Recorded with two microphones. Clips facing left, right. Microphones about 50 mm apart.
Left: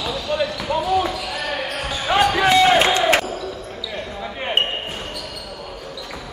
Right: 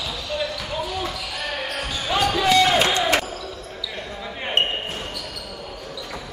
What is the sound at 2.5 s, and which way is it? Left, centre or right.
Crowd, left.